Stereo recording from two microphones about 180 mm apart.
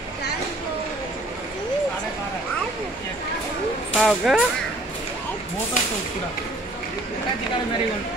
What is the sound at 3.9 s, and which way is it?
Speech, centre (ahead or behind).